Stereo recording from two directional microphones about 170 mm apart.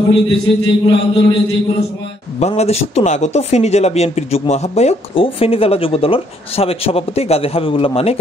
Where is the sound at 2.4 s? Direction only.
40° left (ahead or behind).